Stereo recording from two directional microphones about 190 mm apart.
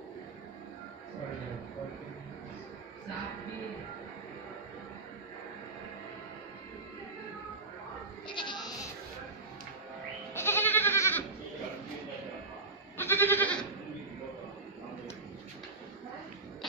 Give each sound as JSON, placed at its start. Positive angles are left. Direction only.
{"t": 8.3, "sound": "sheep", "side_deg": 25}
{"t": 10.3, "sound": "goat", "side_deg": 10}
{"t": 12.9, "sound": "goat", "side_deg": 10}